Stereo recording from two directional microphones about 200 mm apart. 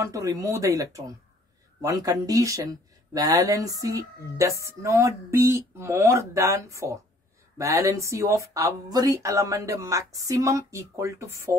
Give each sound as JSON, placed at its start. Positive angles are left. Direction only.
{"t": 0.0, "sound": "speech", "side_deg": -15}